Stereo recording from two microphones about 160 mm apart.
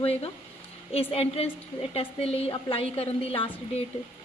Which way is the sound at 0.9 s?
40° left (ahead or behind).